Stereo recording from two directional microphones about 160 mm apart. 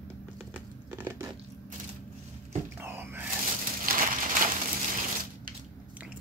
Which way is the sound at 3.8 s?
60° right (ahead or behind).